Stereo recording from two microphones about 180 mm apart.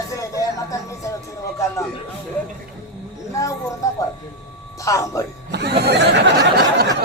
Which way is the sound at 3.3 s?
15° left (ahead or behind).